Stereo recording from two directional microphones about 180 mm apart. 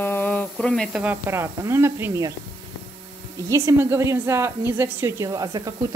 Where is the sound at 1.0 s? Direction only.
15° right (ahead or behind).